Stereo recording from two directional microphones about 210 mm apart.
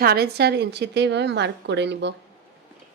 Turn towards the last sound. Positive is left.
turn(degrees=-55)  # may be behind; listen again after turning